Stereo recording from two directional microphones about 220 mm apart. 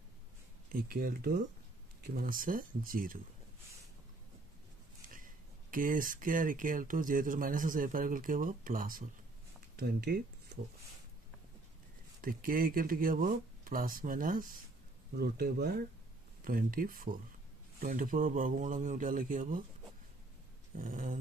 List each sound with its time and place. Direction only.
0.7 s speech: 40° right (ahead or behind)
5.1 s speech: 40° right (ahead or behind)
12.2 s speech: 40° right (ahead or behind)
20.7 s speech: 40° right (ahead or behind)